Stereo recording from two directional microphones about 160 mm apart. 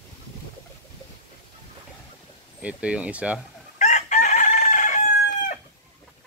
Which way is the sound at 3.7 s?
50° left (ahead or behind).